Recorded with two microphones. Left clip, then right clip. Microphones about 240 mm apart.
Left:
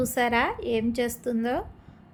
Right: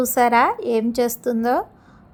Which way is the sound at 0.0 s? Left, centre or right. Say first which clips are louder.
Right 8 dB; centre.